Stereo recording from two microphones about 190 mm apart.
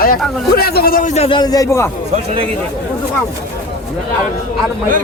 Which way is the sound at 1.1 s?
30° left (ahead or behind).